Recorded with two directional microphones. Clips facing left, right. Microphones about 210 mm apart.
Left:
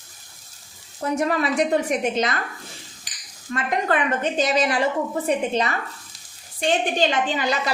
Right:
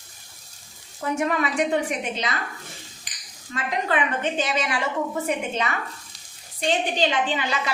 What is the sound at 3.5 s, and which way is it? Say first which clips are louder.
A woman's voice: left 3 dB; 45° left (ahead or behind).